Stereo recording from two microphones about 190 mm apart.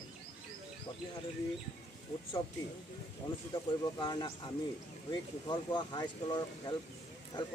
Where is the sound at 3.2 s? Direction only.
25° left (ahead or behind).